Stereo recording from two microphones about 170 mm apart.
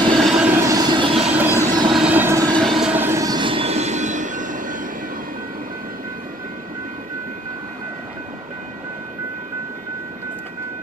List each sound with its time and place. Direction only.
0.1 s train: centre (ahead or behind); by 1.2 s 30° right (ahead or behind)
1.2 s train: 10° right (ahead or behind)
1.9 s vehicle: 5° right (ahead or behind); by 2.6 s 20° right (ahead or behind)
2.6 s train: centre (ahead or behind); by 4.8 s 50° right (ahead or behind)